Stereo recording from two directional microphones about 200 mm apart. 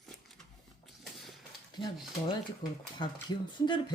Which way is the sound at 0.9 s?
Centre (ahead or behind).